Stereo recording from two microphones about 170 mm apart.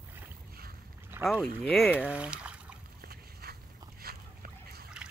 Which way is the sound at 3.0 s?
65° right (ahead or behind).